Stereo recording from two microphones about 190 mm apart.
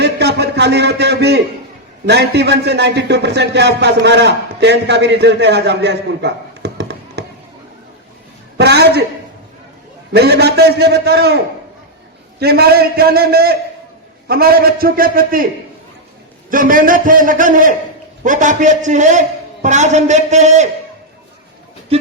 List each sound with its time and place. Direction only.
0.0 s a sound: 60° right (ahead or behind)
2.0 s a man's voice: 60° right (ahead or behind)
8.5 s a man's voice: 60° right (ahead or behind)
10.1 s a man's voice: 60° right (ahead or behind)
12.4 s a man's voice: 55° right (ahead or behind)
16.5 s a man's voice: 45° right (ahead or behind)